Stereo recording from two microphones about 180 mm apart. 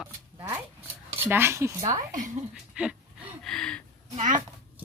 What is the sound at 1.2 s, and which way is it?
Speech, 10° right (ahead or behind).